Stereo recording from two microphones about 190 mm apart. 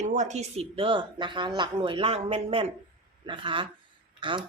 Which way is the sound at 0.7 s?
25° right (ahead or behind).